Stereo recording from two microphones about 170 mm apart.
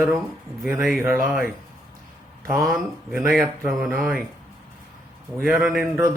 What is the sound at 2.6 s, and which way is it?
Speech, 5° right (ahead or behind).